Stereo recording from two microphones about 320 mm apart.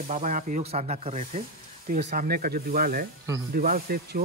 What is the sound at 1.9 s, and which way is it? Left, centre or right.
A man's voice, right.